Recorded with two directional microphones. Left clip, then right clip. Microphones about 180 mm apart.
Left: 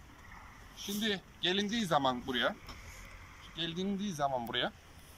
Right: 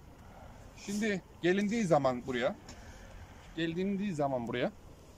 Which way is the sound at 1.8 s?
35° right (ahead or behind).